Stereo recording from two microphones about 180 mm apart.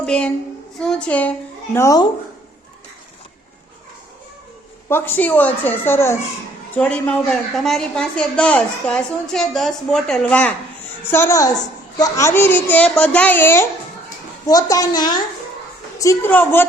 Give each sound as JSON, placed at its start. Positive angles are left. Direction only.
{"t": 0.0, "sound": "a child's voice", "side_deg": 5}
{"t": 4.9, "sound": "a child's voice", "side_deg": 10}